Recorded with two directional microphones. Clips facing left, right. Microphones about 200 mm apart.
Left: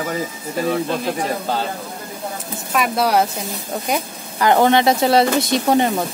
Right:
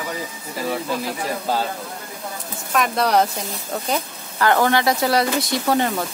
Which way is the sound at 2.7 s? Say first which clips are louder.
Left 1 dB; 5° left (ahead or behind).